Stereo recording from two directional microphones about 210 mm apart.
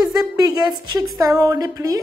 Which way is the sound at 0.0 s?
15° right (ahead or behind).